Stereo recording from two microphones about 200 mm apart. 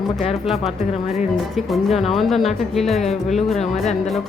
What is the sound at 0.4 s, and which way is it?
Speech, centre (ahead or behind).